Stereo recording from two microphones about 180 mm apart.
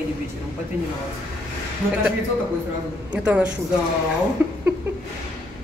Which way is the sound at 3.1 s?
5° right (ahead or behind).